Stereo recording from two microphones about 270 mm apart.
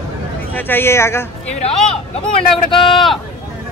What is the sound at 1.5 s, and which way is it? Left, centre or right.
Speech, left.